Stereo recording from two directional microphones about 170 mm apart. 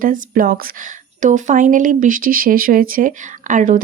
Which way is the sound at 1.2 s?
50° right (ahead or behind).